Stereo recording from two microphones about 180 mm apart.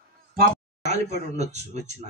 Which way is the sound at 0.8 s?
40° right (ahead or behind).